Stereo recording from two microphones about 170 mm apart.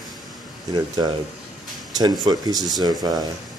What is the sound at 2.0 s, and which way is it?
Speech, 25° right (ahead or behind).